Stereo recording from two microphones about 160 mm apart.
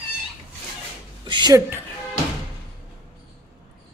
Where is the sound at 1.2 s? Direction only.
25° right (ahead or behind).